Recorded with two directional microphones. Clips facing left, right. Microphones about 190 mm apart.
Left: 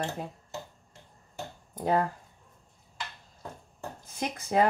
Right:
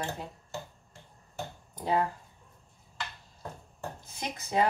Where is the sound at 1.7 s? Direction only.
50° left (ahead or behind).